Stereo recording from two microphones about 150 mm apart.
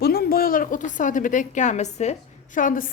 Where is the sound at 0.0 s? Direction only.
90° left; by 2.1 s 50° left (ahead or behind).